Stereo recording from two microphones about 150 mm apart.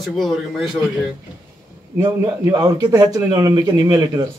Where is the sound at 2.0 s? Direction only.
25° right (ahead or behind).